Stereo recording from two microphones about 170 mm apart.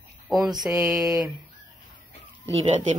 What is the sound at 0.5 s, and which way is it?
Mantra, 25° right (ahead or behind).